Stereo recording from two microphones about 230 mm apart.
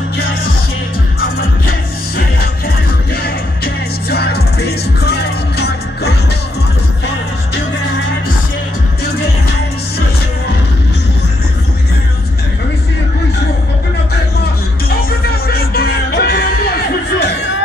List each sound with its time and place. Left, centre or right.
1.7 s music: left
14.9 s music: left